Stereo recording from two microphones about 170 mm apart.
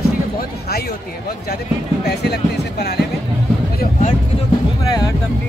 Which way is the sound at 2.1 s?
75° left (ahead or behind).